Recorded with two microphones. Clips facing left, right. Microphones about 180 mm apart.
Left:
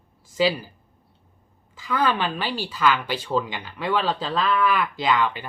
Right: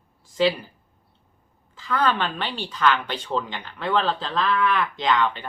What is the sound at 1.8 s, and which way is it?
A woman's voice, 10° left (ahead or behind).